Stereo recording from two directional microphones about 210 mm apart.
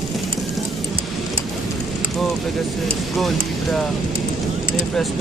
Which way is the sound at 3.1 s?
Centre (ahead or behind).